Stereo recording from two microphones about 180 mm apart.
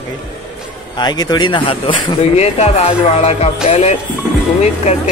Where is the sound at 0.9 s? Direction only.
20° left (ahead or behind).